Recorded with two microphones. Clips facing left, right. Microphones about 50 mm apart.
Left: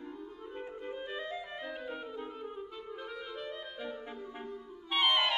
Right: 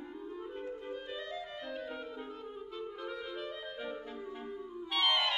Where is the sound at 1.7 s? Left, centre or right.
Centre.